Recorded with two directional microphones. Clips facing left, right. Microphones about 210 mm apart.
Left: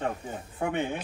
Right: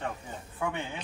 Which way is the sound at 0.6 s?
60° left (ahead or behind).